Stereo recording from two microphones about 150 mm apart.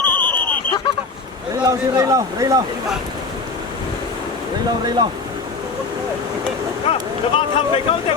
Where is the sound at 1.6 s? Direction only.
25° right (ahead or behind).